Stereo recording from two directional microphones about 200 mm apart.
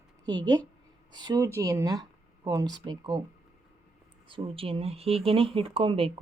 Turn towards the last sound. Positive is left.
turn(degrees=-25)  # may be behind; listen again after turning